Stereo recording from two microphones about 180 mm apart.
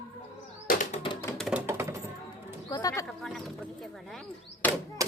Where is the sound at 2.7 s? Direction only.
20° left (ahead or behind).